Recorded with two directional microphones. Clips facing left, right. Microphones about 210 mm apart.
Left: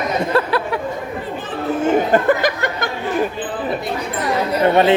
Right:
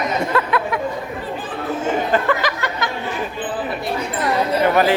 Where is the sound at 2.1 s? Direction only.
50° left (ahead or behind).